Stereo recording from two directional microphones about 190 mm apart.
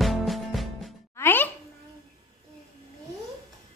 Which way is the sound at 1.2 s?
10° left (ahead or behind).